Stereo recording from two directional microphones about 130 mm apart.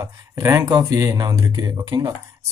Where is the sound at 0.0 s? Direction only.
20° right (ahead or behind).